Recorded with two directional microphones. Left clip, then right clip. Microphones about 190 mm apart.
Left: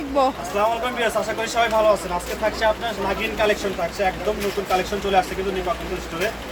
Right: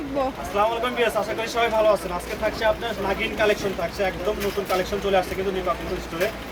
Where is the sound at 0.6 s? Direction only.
5° right (ahead or behind).